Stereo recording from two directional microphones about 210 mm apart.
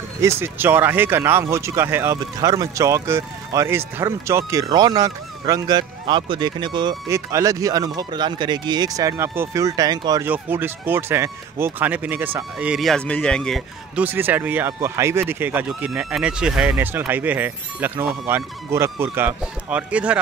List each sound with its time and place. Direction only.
0.2 s speech: 10° right (ahead or behind)
14.0 s speech: 10° right (ahead or behind)